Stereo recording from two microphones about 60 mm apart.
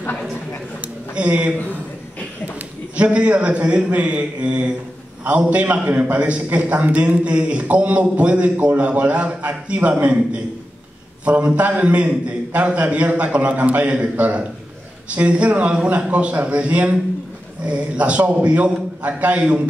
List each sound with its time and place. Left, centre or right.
1.1 s speech: right
3.0 s a man's voice: right
11.2 s a man's voice: right